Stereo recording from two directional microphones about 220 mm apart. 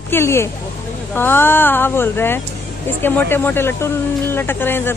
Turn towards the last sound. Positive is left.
turn(degrees=10)  # may be behind; listen again after turning